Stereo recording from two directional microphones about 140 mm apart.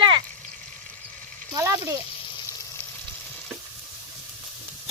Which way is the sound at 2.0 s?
35° left (ahead or behind).